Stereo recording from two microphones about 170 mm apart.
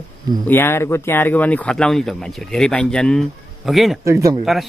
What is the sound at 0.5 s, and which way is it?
Speech, 15° left (ahead or behind).